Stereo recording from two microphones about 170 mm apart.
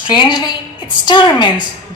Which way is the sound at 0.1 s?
25° left (ahead or behind).